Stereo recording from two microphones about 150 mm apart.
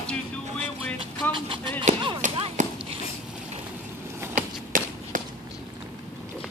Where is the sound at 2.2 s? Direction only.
60° right (ahead or behind).